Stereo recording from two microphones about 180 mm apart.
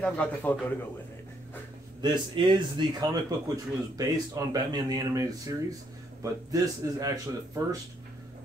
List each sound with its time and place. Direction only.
0.0 s a man's voice: 5° left (ahead or behind)
2.0 s speech: 25° right (ahead or behind)